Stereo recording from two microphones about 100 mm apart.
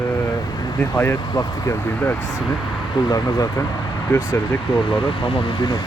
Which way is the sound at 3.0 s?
40° left (ahead or behind).